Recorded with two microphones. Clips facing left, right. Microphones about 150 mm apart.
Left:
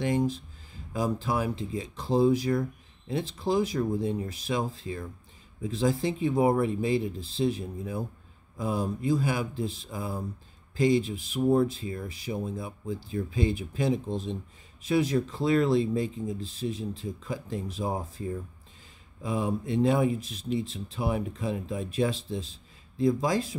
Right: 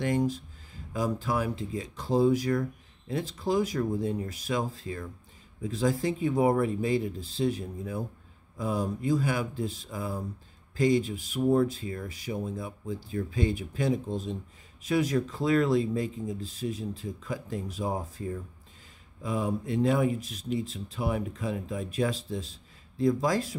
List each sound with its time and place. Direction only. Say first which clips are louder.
0.9 s speech: left 1 dB; 25° left (ahead or behind)